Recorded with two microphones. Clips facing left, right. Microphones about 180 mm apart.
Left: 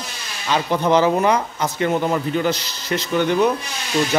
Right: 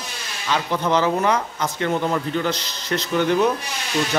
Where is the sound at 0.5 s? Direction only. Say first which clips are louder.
Left 4 dB; 15° left (ahead or behind).